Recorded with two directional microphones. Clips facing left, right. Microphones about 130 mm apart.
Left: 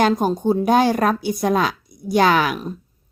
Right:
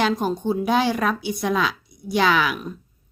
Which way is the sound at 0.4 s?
45° left (ahead or behind).